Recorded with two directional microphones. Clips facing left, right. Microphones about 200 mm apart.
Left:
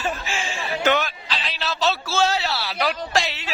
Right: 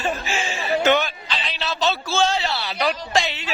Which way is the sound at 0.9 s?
Centre (ahead or behind).